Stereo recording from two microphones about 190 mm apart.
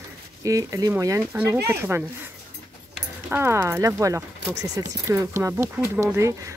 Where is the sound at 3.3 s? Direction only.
15° right (ahead or behind).